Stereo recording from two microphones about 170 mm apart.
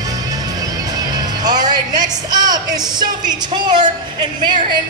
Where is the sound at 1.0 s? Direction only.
25° right (ahead or behind).